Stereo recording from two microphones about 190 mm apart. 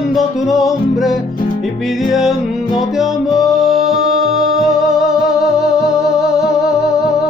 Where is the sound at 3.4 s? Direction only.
Centre (ahead or behind).